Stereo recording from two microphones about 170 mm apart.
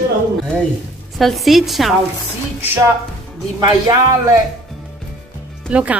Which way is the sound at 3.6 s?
20° right (ahead or behind).